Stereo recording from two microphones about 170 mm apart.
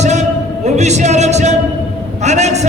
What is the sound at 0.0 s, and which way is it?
Music, 40° right (ahead or behind).